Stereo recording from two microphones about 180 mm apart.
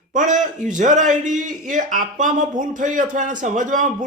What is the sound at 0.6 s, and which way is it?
A man's voice, 45° right (ahead or behind).